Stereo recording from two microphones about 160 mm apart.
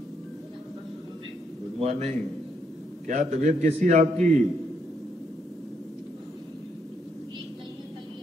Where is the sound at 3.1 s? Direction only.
50° right (ahead or behind).